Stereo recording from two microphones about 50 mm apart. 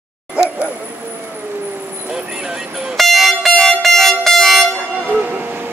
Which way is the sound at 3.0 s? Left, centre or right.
Centre.